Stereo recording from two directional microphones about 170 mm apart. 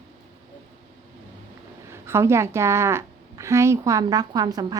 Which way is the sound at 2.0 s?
15° right (ahead or behind).